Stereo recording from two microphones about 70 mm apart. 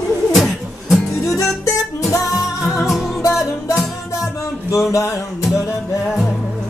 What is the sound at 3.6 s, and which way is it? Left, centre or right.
Music, left.